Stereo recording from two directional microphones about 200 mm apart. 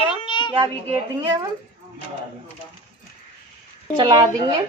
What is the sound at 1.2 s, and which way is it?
Speech, 20° right (ahead or behind).